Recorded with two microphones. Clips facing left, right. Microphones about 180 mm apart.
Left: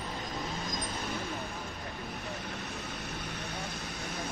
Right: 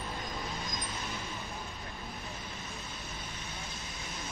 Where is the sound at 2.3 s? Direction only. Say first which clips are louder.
Left 5 dB; 65° left (ahead or behind).